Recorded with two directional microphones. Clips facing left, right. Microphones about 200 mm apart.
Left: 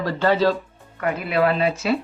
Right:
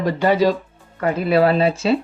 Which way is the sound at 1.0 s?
35° right (ahead or behind).